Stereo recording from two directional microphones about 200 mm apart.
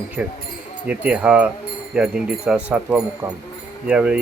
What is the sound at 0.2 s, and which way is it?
Speech, 5° right (ahead or behind).